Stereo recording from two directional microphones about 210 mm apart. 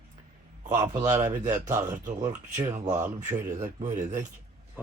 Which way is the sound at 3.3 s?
35° right (ahead or behind).